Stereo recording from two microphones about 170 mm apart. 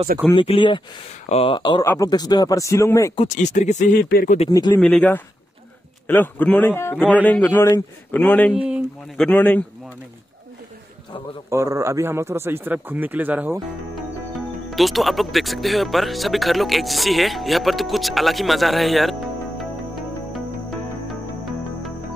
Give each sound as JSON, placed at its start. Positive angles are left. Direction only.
{"t": 0.3, "sound": "speech", "side_deg": 30}
{"t": 3.3, "sound": "speech", "side_deg": 45}
{"t": 4.0, "sound": "speech", "side_deg": 60}
{"t": 4.5, "sound": "speech", "side_deg": 25}
{"t": 4.7, "sound": "a man's voice", "side_deg": 10}
{"t": 8.5, "sound": "a man's voice", "side_deg": -5}
{"t": 9.1, "sound": "a man's voice", "side_deg": 5}
{"t": 11.5, "sound": "speech", "side_deg": -20}
{"t": 14.7, "sound": "speech", "side_deg": 0}